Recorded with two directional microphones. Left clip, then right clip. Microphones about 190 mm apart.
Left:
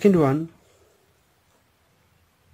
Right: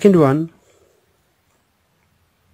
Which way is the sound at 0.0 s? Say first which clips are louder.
Right 6 dB; 30° right (ahead or behind).